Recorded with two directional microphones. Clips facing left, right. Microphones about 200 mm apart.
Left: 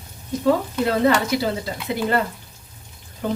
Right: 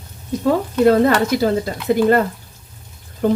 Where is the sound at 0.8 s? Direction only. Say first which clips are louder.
Right 6 dB; 45° right (ahead or behind).